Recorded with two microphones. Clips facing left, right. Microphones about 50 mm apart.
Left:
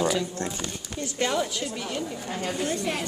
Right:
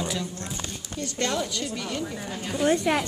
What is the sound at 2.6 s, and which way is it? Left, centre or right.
Speech, right.